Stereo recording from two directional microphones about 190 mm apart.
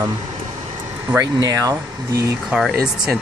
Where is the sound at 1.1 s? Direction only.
20° right (ahead or behind).